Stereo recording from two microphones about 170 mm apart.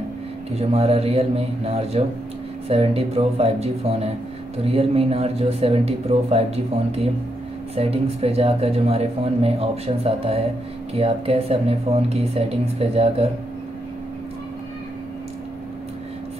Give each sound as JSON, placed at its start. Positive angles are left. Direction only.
{"t": 0.5, "sound": "speech", "side_deg": -35}